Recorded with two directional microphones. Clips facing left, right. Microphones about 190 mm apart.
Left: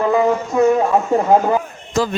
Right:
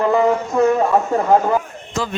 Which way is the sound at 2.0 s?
40° left (ahead or behind).